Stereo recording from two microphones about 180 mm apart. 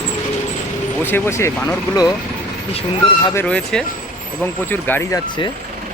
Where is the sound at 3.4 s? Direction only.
5° left (ahead or behind).